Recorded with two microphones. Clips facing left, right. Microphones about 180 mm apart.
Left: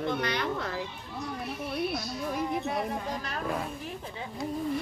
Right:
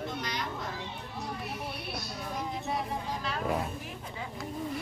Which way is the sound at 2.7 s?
45° left (ahead or behind).